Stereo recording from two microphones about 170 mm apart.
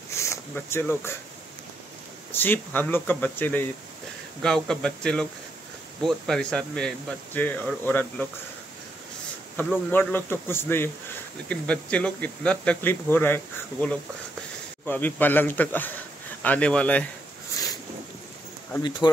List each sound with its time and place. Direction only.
0.1 s a sound: 15° left (ahead or behind)
2.3 s speech: 10° left (ahead or behind)
9.8 s speech: 10° left (ahead or behind)
18.8 s speech: 25° left (ahead or behind)